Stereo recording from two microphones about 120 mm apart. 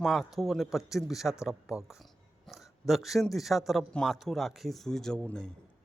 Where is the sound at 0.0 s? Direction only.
Centre (ahead or behind).